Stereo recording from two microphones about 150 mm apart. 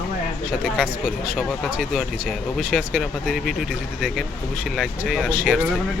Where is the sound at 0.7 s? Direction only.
5° right (ahead or behind).